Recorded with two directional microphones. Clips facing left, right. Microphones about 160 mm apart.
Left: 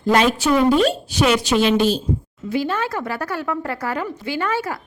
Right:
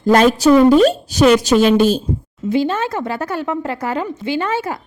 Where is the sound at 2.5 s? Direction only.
25° right (ahead or behind).